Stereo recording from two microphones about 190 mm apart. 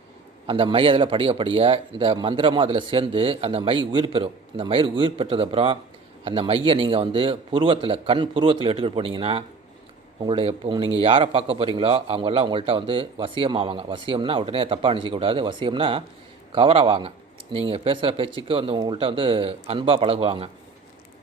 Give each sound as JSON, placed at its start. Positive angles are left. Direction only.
{"t": 0.4, "sound": "speech", "side_deg": -30}